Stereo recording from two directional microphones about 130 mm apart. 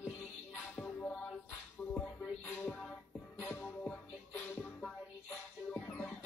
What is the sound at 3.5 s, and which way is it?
Music, 5° left (ahead or behind).